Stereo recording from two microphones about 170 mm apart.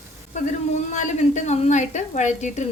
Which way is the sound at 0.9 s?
45° left (ahead or behind).